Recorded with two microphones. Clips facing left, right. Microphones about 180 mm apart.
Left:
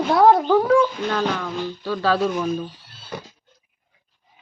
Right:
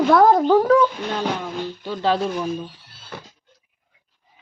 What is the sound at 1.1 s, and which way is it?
Music, 20° right (ahead or behind).